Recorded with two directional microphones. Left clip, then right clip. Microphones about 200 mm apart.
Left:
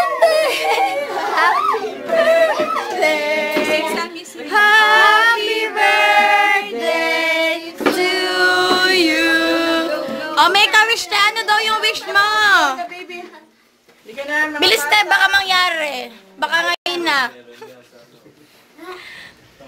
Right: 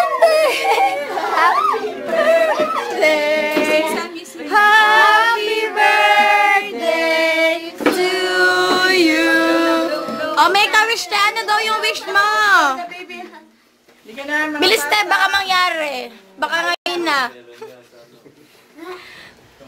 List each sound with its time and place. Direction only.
0.0 s a sound: 5° right (ahead or behind)
2.1 s music: 5° right (ahead or behind)
3.0 s singing: 30° right (ahead or behind)
5.0 s music: 10° left (ahead or behind)
5.7 s choir: centre (ahead or behind)
6.8 s female singing: centre (ahead or behind)
14.6 s a woman's voice: 5° right (ahead or behind)
18.9 s a sound: centre (ahead or behind)